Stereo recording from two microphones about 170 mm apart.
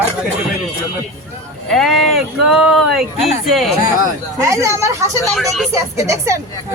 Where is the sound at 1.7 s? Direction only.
Centre (ahead or behind).